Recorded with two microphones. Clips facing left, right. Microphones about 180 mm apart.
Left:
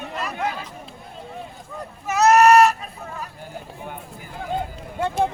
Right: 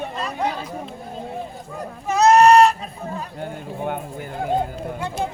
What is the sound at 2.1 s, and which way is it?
Speech, 30° right (ahead or behind).